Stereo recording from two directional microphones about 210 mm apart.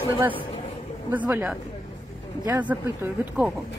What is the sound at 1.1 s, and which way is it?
Speech, 5° right (ahead or behind).